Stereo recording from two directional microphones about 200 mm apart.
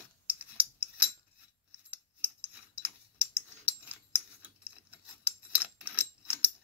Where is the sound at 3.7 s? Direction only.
10° right (ahead or behind).